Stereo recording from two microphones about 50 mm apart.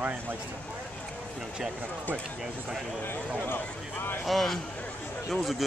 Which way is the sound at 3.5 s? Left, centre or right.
Left.